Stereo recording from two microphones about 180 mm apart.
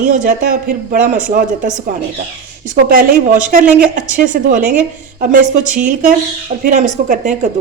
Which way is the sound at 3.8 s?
45° right (ahead or behind).